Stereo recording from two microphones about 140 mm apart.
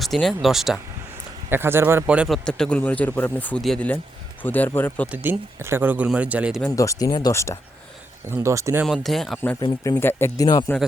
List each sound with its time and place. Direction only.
0.0 s a man's voice: centre (ahead or behind)
1.5 s a man's voice: 15° right (ahead or behind); by 5.0 s 15° left (ahead or behind)
5.1 s speech: 15° right (ahead or behind)
6.7 s speech: 25° left (ahead or behind)
8.3 s speech: 20° right (ahead or behind)
8.8 s a man's voice: centre (ahead or behind)
9.6 s speech: 30° left (ahead or behind)
9.9 s speech: 15° left (ahead or behind)
10.4 s speech: 30° left (ahead or behind)